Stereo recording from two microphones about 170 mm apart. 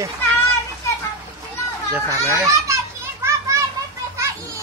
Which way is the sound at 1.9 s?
15° right (ahead or behind).